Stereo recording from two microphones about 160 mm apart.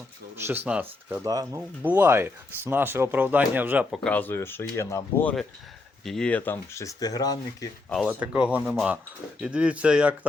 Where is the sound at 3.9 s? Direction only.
5° left (ahead or behind).